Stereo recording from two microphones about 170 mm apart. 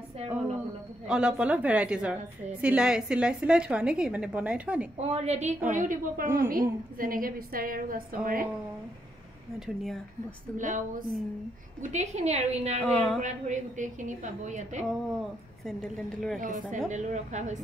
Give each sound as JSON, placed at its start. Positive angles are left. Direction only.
{"t": 1.0, "sound": "a woman's voice", "side_deg": -5}
{"t": 4.9, "sound": "a woman's voice", "side_deg": -40}
{"t": 10.6, "sound": "a woman's voice", "side_deg": -50}
{"t": 12.8, "sound": "a woman's voice", "side_deg": 5}
{"t": 13.2, "sound": "a woman's voice", "side_deg": -45}
{"t": 14.9, "sound": "a woman's voice", "side_deg": 0}
{"t": 16.3, "sound": "a woman's voice", "side_deg": -50}